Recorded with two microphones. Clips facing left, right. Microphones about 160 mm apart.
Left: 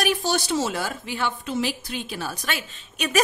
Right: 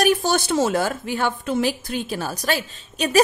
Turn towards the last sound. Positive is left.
turn(degrees=-30)  # may be behind; listen again after turning